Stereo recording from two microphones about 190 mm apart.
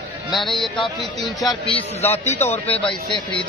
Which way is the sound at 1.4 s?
25° left (ahead or behind).